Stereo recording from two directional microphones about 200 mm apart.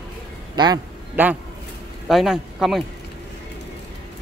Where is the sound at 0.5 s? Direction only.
20° right (ahead or behind).